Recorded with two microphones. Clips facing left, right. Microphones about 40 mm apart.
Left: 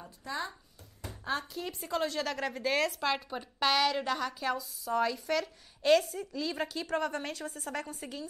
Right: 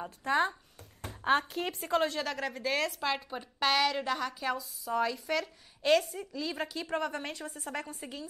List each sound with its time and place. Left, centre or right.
0.0 s speech: right
1.0 s a sound: right
1.5 s speech: right
1.9 s a woman's voice: centre
2.1 s a woman's voice: centre
6.9 s a woman's voice: centre